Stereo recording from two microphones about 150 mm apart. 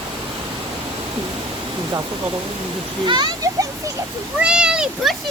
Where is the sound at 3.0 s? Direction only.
30° right (ahead or behind).